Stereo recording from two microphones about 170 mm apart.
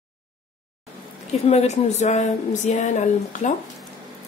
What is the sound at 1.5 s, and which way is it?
Speech, 40° left (ahead or behind).